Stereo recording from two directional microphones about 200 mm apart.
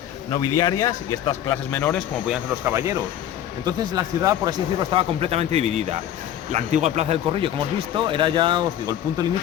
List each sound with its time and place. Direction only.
0.3 s speech: 20° left (ahead or behind); by 2.7 s 5° right (ahead or behind)
2.7 s speech: 15° right (ahead or behind)